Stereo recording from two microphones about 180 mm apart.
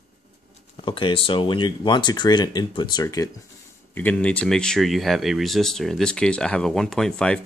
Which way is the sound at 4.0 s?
10° left (ahead or behind).